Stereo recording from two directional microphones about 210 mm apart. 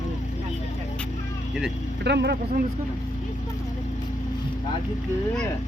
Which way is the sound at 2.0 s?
50° right (ahead or behind).